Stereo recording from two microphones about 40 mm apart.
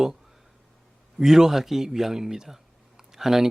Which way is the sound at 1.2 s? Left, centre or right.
Centre.